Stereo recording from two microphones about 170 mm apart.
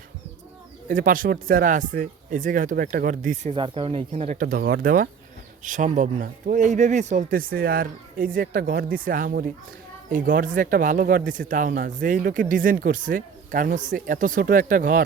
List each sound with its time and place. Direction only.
0.9 s speech: 55° right (ahead or behind)
3.5 s speech: 30° right (ahead or behind)
4.3 s speech: 55° right (ahead or behind)